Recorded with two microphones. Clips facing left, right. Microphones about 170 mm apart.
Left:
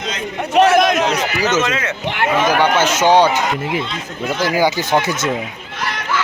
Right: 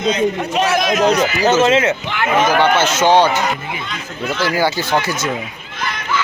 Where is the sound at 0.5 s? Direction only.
55° left (ahead or behind).